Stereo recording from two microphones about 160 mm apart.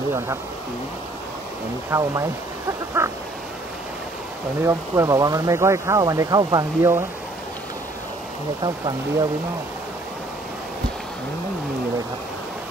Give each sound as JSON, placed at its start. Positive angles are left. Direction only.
{"t": 1.9, "sound": "speech", "side_deg": -20}
{"t": 3.0, "sound": "a sound", "side_deg": -15}
{"t": 4.6, "sound": "speech", "side_deg": -20}
{"t": 8.6, "sound": "speech", "side_deg": -30}